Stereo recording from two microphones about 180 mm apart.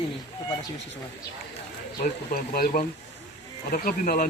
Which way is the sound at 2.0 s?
50° left (ahead or behind).